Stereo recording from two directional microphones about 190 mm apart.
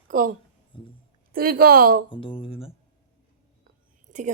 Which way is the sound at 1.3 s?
50° right (ahead or behind).